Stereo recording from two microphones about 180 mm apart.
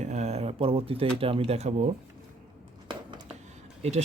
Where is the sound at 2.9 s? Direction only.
25° right (ahead or behind).